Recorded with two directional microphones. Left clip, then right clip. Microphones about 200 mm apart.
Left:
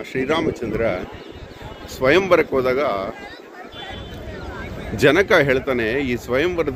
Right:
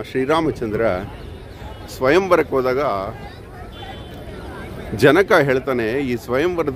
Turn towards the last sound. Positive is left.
turn(degrees=-15)  # may be behind; listen again after turning